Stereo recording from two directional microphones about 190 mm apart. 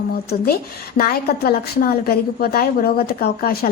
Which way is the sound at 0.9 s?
50° left (ahead or behind).